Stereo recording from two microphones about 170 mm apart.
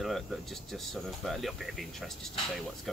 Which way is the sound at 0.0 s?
Centre (ahead or behind).